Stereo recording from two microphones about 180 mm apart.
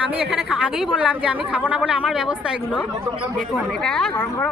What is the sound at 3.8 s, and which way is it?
Speech, 5° left (ahead or behind).